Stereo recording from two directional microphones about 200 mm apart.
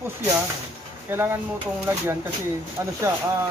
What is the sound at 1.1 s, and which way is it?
Speech, 10° right (ahead or behind).